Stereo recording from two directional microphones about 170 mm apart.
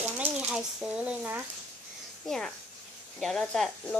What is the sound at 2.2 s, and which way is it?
Speech, 5° left (ahead or behind).